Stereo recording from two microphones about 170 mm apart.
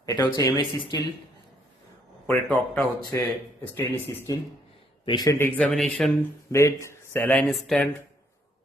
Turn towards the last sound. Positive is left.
turn(degrees=0)  # may be behind; listen again after turning